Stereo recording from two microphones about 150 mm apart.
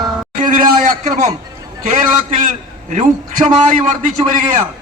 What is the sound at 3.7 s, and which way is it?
Speech, 60° right (ahead or behind).